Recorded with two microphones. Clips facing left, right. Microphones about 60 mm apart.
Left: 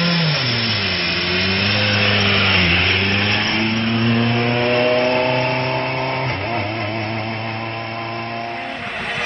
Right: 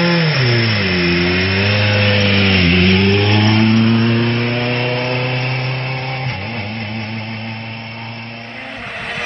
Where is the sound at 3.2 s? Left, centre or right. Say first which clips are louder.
Right 5 dB; left.